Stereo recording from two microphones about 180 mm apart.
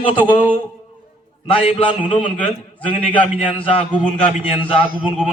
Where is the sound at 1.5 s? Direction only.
30° left (ahead or behind).